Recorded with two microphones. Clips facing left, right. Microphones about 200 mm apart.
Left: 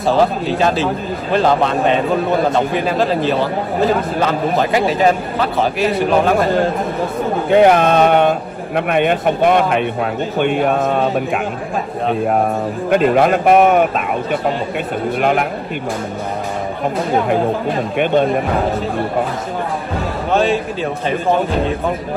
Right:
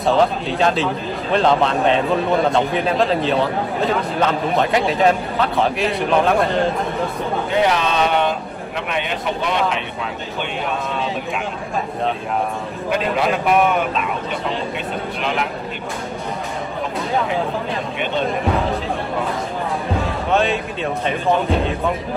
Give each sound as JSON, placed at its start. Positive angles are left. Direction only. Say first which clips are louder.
{"t": 0.0, "sound": "a man's voice", "louder": "left 2 dB", "side_deg": 0}
{"t": 7.4, "sound": "a man's voice", "louder": "left 9 dB", "side_deg": 55}
{"t": 12.9, "sound": "a man's voice", "louder": "left 7 dB", "side_deg": 50}
{"t": 17.3, "sound": "a man's voice", "louder": "left 6 dB", "side_deg": 50}
{"t": 20.3, "sound": "a man's voice", "louder": "left 4 dB", "side_deg": 0}